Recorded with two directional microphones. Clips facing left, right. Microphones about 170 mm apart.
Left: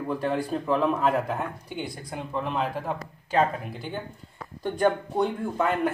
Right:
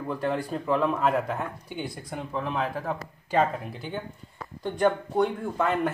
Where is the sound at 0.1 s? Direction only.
5° left (ahead or behind).